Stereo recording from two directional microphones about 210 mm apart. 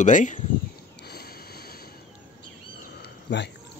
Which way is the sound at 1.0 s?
50° left (ahead or behind).